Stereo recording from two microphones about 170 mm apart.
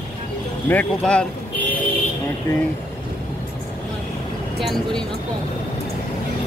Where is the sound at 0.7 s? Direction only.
10° left (ahead or behind).